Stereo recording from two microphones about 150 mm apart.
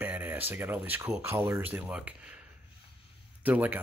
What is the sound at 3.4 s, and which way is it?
Speech, 10° right (ahead or behind).